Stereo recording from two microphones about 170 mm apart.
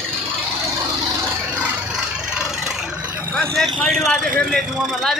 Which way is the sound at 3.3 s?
5° left (ahead or behind).